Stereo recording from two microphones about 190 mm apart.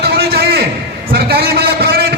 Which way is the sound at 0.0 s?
55° right (ahead or behind).